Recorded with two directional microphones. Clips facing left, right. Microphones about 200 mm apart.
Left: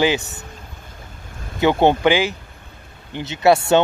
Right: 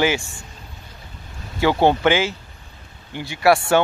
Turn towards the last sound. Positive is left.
turn(degrees=20)  # may be behind; listen again after turning